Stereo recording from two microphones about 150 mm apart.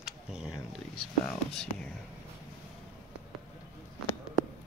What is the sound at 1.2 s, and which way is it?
Speech, 5° left (ahead or behind).